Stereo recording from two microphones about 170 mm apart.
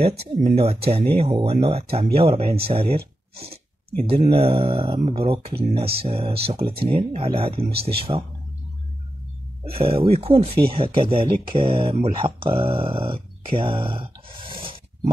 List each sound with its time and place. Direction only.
0.2 s speech: 40° right (ahead or behind)
9.7 s speech: 35° right (ahead or behind)